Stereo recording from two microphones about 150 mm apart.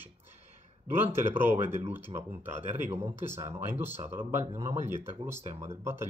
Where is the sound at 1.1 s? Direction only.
15° right (ahead or behind).